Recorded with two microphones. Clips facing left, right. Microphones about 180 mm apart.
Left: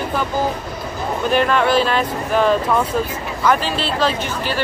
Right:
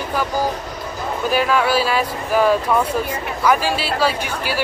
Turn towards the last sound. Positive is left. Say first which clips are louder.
# left 1 dB
turn(degrees=-10)  # may be behind; listen again after turning